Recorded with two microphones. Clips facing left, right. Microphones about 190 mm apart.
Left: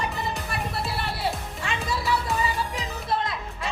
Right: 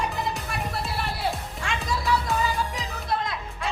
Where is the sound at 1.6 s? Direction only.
Centre (ahead or behind).